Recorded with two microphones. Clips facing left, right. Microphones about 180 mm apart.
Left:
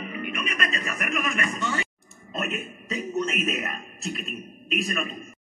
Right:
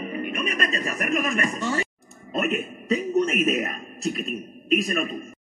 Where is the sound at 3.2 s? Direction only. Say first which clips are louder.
Right 3 dB; 50° right (ahead or behind).